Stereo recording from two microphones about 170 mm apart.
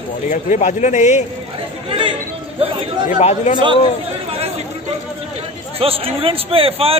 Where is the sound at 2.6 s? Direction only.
35° right (ahead or behind).